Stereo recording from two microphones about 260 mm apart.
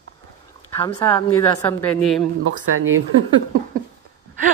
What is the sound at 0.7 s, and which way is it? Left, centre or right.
Speech, centre.